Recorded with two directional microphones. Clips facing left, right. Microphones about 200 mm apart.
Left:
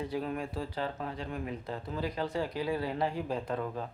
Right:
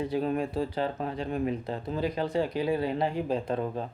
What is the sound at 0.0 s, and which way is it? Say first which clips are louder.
Speech: right 6 dB; 25° right (ahead or behind).